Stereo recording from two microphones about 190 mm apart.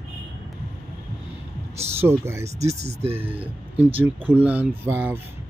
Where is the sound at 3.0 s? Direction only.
30° right (ahead or behind).